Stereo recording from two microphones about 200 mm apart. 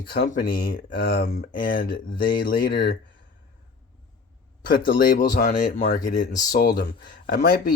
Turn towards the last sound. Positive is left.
turn(degrees=45)  # may be behind; listen again after turning